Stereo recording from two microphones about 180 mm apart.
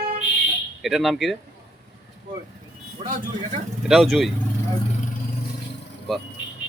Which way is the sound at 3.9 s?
Centre (ahead or behind).